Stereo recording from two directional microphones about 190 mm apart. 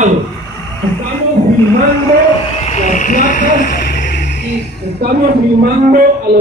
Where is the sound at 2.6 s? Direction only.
40° left (ahead or behind).